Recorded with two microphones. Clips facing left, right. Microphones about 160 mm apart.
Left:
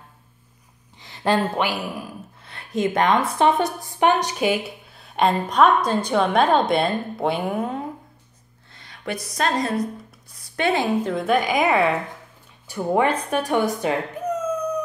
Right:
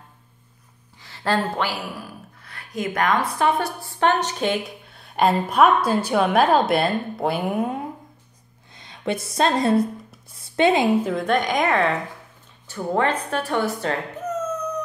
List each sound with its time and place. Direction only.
1.0 s speech: 20° left (ahead or behind); by 7.7 s centre (ahead or behind)
8.7 s speech: 20° right (ahead or behind)
10.3 s a sound: 25° right (ahead or behind)
11.1 s a woman's voice: centre (ahead or behind)